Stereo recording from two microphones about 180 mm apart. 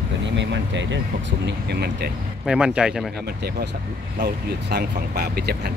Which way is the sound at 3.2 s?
60° right (ahead or behind).